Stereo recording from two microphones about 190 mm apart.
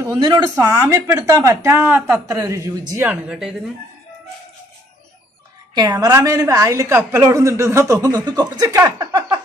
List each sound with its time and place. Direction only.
0.0 s speech: 20° right (ahead or behind)
3.1 s speech: 5° right (ahead or behind)
5.8 s speech: 20° right (ahead or behind)